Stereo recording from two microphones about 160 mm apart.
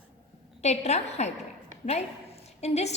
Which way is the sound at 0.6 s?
45° left (ahead or behind).